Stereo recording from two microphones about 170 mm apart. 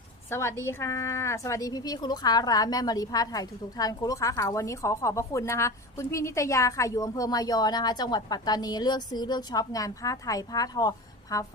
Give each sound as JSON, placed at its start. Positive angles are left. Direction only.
{"t": 0.3, "sound": "a woman's voice", "side_deg": 15}